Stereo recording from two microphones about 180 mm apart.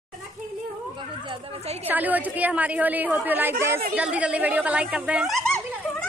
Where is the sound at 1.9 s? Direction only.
10° right (ahead or behind).